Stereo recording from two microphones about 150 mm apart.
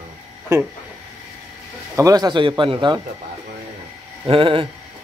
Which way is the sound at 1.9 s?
25° right (ahead or behind).